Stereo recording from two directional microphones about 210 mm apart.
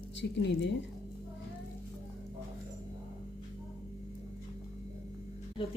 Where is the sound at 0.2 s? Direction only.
55° left (ahead or behind).